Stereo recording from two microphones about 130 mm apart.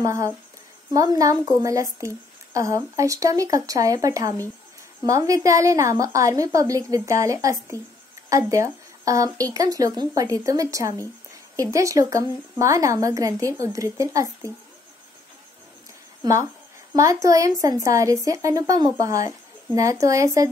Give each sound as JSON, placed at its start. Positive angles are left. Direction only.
{"t": 0.0, "sound": "speech", "side_deg": -25}
{"t": 16.9, "sound": "speech", "side_deg": -25}